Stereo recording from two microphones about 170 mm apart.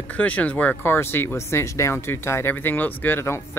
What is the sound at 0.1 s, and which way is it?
Speech, 10° left (ahead or behind).